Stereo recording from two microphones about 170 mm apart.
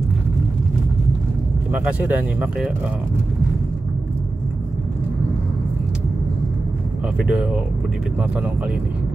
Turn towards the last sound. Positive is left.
turn(degrees=-5)  # may be behind; listen again after turning